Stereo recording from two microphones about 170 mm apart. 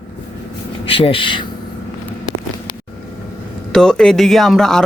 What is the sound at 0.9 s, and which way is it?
Speech, 30° left (ahead or behind).